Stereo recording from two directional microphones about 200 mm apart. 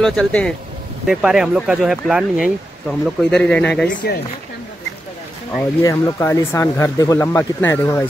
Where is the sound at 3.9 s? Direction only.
55° left (ahead or behind).